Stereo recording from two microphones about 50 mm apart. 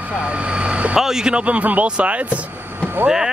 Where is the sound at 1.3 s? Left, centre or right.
Right.